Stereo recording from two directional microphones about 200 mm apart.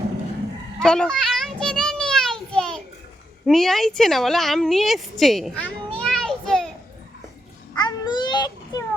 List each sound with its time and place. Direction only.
0.8 s children playing: 5° left (ahead or behind)
3.4 s a woman's voice: centre (ahead or behind)
7.8 s babbling: 20° left (ahead or behind)